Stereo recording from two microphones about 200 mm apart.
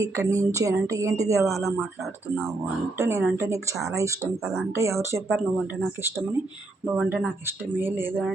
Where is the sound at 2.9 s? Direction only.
15° right (ahead or behind).